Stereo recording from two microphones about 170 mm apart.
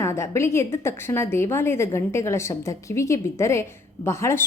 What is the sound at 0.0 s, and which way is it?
A woman's voice, 15° left (ahead or behind).